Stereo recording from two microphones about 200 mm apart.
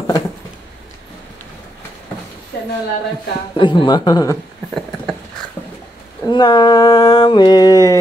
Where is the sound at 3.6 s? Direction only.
25° left (ahead or behind).